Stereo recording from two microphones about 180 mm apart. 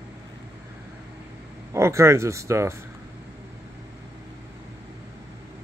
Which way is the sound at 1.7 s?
15° right (ahead or behind).